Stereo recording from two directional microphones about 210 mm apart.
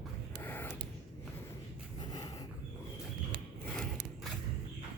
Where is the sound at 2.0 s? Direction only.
20° left (ahead or behind).